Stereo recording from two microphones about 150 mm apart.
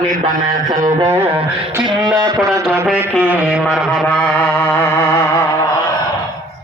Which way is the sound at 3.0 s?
10° right (ahead or behind).